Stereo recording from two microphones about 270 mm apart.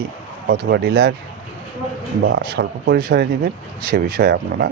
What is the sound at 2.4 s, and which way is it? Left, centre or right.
A man's voice, right.